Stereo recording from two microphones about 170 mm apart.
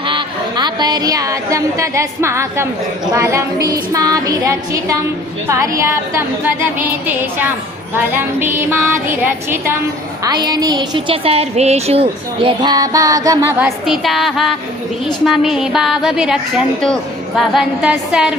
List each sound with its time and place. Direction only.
0.0 s a woman's voice: 30° right (ahead or behind)
5.5 s music: 20° right (ahead or behind)
7.9 s music: 10° right (ahead or behind)
10.2 s a woman's voice: 25° right (ahead or behind)
13.6 s a woman's voice: centre (ahead or behind)